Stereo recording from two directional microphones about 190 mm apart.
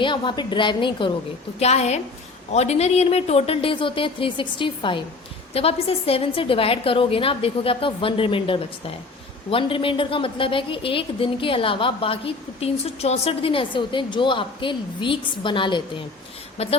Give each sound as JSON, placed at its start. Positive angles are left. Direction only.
{"t": 0.0, "sound": "a woman's voice", "side_deg": 25}